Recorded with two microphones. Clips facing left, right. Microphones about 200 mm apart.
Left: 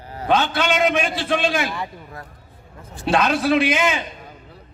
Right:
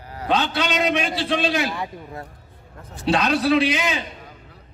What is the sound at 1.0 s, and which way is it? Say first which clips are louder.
Speech: left 1 dB; 50° left (ahead or behind).